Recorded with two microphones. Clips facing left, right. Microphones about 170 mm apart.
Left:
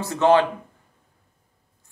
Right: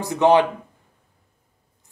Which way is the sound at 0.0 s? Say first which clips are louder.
Right 1 dB; 15° right (ahead or behind).